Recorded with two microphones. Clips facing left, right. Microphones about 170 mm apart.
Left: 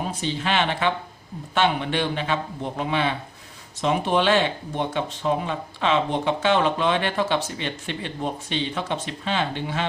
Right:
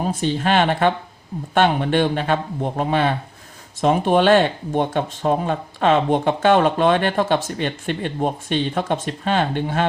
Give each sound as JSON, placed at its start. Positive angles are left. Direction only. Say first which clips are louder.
{"t": 0.0, "sound": "speech", "louder": "right 6 dB", "side_deg": -50}